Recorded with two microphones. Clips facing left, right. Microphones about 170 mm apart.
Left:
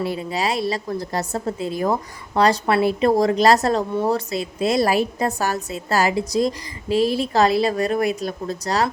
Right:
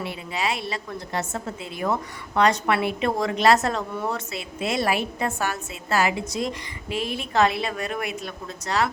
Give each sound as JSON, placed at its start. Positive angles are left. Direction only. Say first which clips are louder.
{"t": 0.0, "sound": "a woman's voice", "louder": "left 5 dB", "side_deg": 40}